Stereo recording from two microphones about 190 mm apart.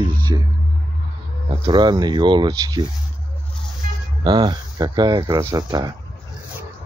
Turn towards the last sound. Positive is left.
turn(degrees=-20)  # may be behind; listen again after turning